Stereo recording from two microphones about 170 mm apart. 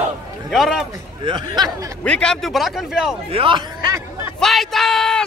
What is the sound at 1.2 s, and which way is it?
Speech, 25° right (ahead or behind).